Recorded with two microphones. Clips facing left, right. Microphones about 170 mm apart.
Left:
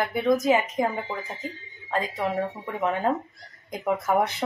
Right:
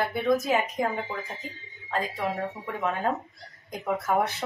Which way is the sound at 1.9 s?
20° left (ahead or behind).